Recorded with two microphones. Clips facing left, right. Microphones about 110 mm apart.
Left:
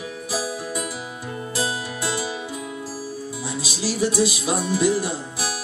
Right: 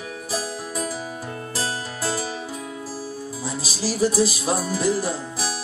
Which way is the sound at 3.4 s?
40° right (ahead or behind).